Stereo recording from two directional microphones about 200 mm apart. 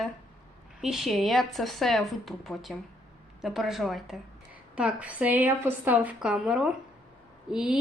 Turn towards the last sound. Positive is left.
turn(degrees=-5)  # may be behind; listen again after turning